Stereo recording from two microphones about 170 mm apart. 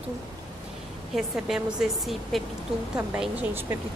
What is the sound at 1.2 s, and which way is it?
A woman's voice, centre (ahead or behind).